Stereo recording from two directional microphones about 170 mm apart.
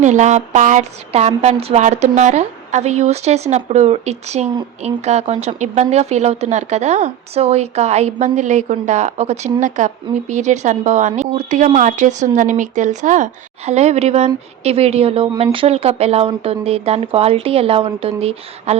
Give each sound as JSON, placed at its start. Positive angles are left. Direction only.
{"t": 0.0, "sound": "a woman's voice", "side_deg": -45}